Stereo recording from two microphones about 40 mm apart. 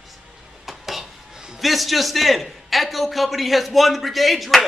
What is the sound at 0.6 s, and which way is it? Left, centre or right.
Stir, centre.